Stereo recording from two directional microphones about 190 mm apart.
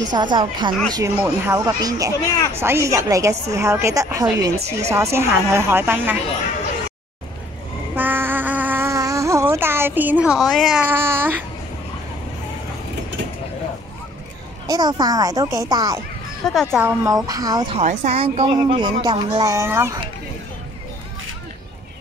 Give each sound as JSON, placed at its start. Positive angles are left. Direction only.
{"t": 0.1, "sound": "speech", "side_deg": -25}
{"t": 0.9, "sound": "a woman's voice", "side_deg": -15}
{"t": 4.6, "sound": "speech", "side_deg": -35}
{"t": 4.9, "sound": "a woman's voice", "side_deg": -15}
{"t": 7.9, "sound": "a sound", "side_deg": -10}
{"t": 14.7, "sound": "speech", "side_deg": -20}
{"t": 17.7, "sound": "a woman's voice", "side_deg": -35}